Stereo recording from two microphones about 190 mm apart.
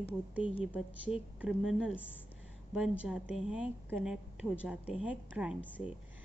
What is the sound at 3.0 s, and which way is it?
A woman's voice, 5° right (ahead or behind).